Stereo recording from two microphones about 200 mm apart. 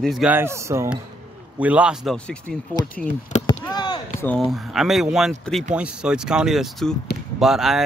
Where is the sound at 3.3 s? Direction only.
40° left (ahead or behind).